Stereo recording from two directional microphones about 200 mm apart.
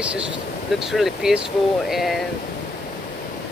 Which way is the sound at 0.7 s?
Centre (ahead or behind).